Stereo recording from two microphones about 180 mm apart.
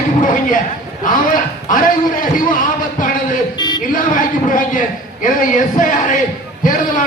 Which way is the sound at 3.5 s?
25° left (ahead or behind).